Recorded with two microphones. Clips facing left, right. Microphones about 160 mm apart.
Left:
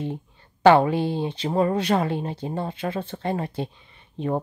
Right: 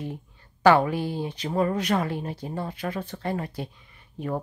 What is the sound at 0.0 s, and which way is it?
Speech, 25° left (ahead or behind).